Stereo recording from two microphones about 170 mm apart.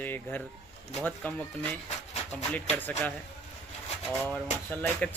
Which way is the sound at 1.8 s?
40° left (ahead or behind).